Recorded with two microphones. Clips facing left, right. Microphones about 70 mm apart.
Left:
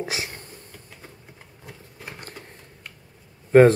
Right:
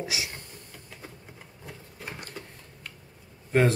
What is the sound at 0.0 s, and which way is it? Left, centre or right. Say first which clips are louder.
Speech: left 3 dB; left.